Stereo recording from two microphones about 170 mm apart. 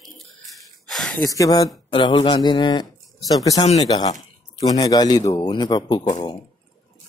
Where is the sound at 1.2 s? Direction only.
20° left (ahead or behind).